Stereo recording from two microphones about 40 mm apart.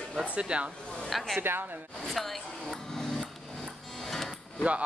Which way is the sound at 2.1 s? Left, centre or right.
Centre.